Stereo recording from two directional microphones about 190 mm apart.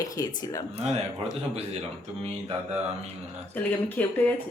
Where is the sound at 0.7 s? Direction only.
35° right (ahead or behind).